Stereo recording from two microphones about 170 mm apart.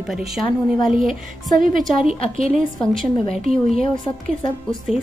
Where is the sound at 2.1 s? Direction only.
35° left (ahead or behind).